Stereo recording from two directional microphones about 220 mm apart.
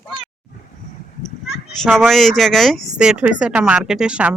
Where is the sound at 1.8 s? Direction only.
Centre (ahead or behind).